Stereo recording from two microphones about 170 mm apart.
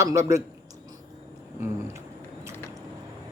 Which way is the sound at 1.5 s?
15° right (ahead or behind).